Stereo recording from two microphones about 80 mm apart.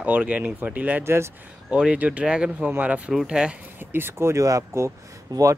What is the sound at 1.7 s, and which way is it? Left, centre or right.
Speech, centre.